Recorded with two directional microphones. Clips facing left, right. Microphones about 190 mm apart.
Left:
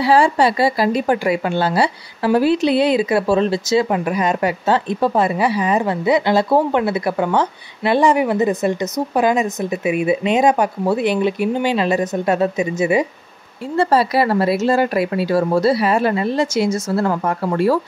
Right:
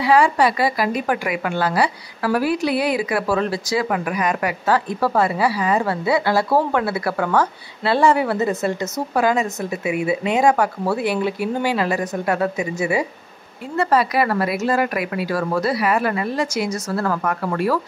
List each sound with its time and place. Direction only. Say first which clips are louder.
0.0 s speech: left 2 dB; 30° left (ahead or behind)